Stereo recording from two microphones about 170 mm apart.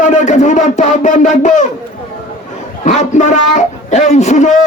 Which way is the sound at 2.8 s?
45° left (ahead or behind).